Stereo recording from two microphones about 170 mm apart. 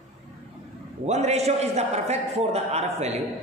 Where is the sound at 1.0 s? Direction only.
40° right (ahead or behind).